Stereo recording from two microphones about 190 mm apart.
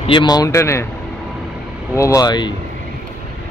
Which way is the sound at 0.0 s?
25° left (ahead or behind).